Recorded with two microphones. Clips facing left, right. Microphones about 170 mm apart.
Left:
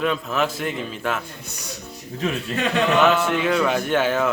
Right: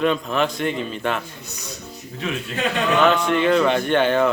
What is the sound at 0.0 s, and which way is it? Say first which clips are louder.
A man's voice: right 2 dB; centre (ahead or behind).